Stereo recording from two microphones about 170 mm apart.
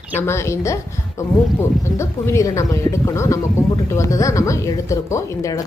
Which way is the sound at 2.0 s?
15° left (ahead or behind).